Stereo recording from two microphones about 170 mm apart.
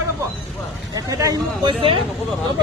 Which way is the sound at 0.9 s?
20° right (ahead or behind).